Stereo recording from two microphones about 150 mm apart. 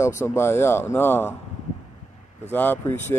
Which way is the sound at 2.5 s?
10° left (ahead or behind).